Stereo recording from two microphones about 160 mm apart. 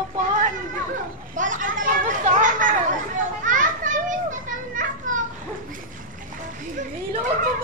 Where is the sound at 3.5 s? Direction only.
55° right (ahead or behind).